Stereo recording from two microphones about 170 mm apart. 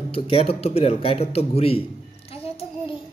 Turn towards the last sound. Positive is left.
turn(degrees=35)  # may be behind; listen again after turning